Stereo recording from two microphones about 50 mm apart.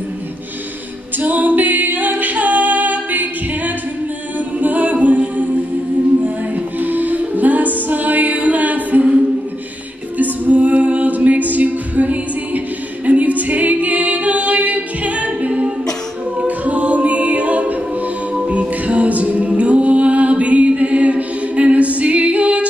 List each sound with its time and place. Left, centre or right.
1.2 s a capella: right
4.6 s music: right
6.8 s music: right
10.1 s music: right
16.3 s a capella: right
18.5 s music: right